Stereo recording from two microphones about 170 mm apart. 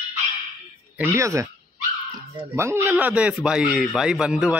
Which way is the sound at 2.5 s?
15° right (ahead or behind).